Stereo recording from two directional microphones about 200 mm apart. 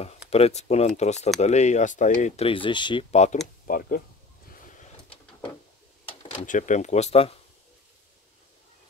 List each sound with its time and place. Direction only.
0.3 s speech: 35° left (ahead or behind)
3.6 s speech: 45° left (ahead or behind)
6.3 s speech: 40° left (ahead or behind)